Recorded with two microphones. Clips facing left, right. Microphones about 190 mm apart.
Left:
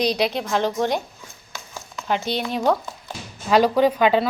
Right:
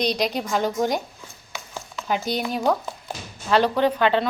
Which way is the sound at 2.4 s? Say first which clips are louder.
Left 2 dB; 5° right (ahead or behind).